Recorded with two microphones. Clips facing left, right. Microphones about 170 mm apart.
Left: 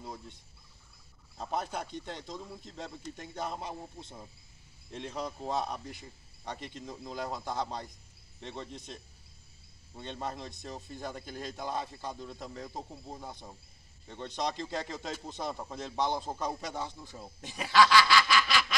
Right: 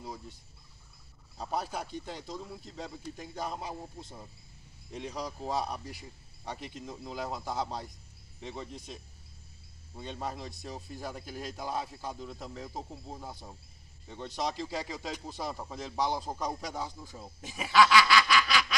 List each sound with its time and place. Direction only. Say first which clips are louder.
0.0 s speech: right 1 dB; centre (ahead or behind)
1.4 s speech: even; 5° right (ahead or behind)
5.1 s speech: even; centre (ahead or behind)